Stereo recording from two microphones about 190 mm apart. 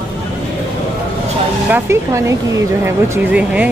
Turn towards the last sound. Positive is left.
turn(degrees=-5)  # may be behind; listen again after turning